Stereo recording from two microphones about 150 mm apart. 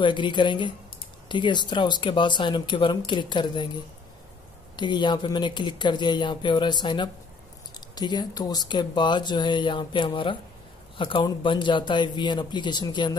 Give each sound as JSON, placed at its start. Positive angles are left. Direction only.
{"t": 0.0, "sound": "speech", "side_deg": 30}